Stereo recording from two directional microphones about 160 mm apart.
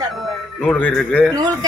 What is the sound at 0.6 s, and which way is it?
Speech, 5° left (ahead or behind).